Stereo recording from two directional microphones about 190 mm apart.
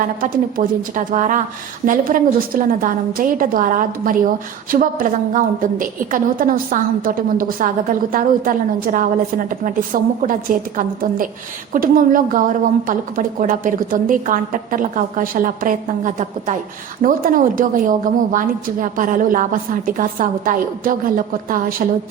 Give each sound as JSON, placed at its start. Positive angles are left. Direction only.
{"t": 0.0, "sound": "a woman's voice", "side_deg": -45}
{"t": 11.7, "sound": "a woman's voice", "side_deg": -45}